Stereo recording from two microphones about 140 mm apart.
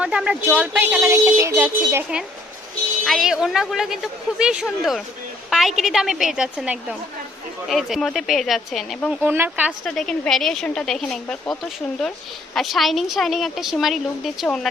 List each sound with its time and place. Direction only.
0.0 s speech: 5° right (ahead or behind)
3.0 s a woman's voice: centre (ahead or behind)
9.2 s speech: 15° right (ahead or behind)
9.8 s a woman's voice: 5° left (ahead or behind)
12.5 s a woman's voice: centre (ahead or behind)